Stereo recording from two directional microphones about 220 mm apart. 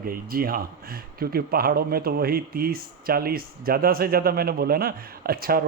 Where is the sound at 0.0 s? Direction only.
40° right (ahead or behind).